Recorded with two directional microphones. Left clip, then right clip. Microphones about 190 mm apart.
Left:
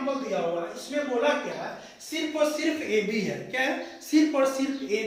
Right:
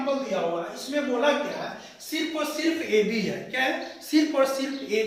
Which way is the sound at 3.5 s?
25° left (ahead or behind).